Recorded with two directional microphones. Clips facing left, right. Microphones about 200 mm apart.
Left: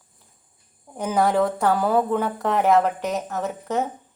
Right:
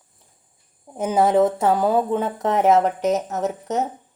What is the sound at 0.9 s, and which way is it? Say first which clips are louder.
A woman's voice: right 3 dB; 20° right (ahead or behind).